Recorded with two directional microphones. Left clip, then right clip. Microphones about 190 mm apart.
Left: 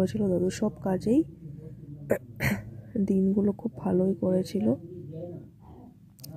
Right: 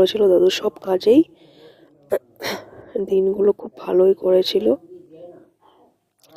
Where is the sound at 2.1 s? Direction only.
35° right (ahead or behind).